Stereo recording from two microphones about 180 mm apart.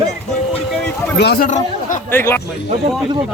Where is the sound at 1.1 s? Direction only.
65° left (ahead or behind).